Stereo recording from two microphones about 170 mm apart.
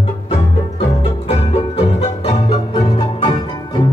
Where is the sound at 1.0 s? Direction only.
35° left (ahead or behind).